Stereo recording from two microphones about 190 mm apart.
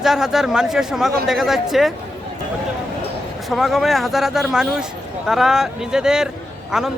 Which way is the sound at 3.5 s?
Centre (ahead or behind).